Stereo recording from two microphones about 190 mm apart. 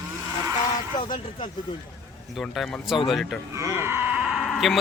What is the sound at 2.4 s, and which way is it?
Speech, centre (ahead or behind).